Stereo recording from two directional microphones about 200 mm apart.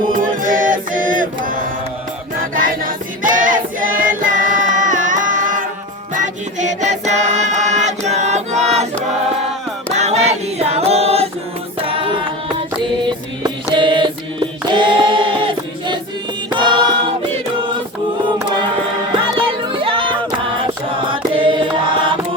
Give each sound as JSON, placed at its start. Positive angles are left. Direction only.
{"t": 0.1, "sound": "music", "side_deg": -40}
{"t": 2.6, "sound": "choir", "side_deg": -45}
{"t": 4.2, "sound": "music", "side_deg": -40}
{"t": 10.0, "sound": "choir", "side_deg": -35}
{"t": 11.9, "sound": "music", "side_deg": -25}
{"t": 13.4, "sound": "a sound", "side_deg": -25}
{"t": 16.5, "sound": "choir", "side_deg": -25}
{"t": 19.4, "sound": "music", "side_deg": -25}
{"t": 21.1, "sound": "mantra", "side_deg": -25}